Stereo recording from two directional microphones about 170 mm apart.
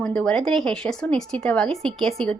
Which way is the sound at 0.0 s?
5° left (ahead or behind).